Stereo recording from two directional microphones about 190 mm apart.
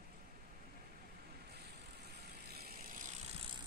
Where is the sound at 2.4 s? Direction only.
55° right (ahead or behind).